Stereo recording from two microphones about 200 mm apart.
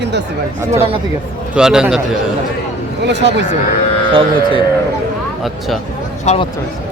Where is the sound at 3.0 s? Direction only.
60° right (ahead or behind).